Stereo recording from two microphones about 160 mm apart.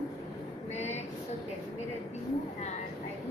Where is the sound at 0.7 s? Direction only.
45° left (ahead or behind).